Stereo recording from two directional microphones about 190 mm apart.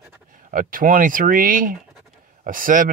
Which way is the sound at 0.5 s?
45° right (ahead or behind).